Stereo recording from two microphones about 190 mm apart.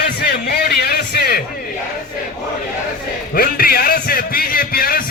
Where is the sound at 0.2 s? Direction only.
55° left (ahead or behind).